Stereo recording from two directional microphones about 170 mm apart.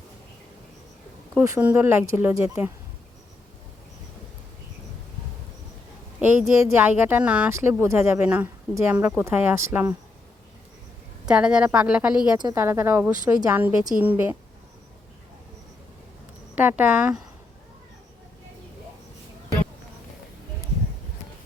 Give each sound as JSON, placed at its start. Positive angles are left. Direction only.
{"t": 1.4, "sound": "speech", "side_deg": -15}
{"t": 6.1, "sound": "speech", "side_deg": -5}
{"t": 11.3, "sound": "a woman's voice", "side_deg": -5}
{"t": 12.4, "sound": "a woman's voice", "side_deg": -25}
{"t": 12.6, "sound": "speech", "side_deg": -15}
{"t": 16.6, "sound": "speech", "side_deg": -10}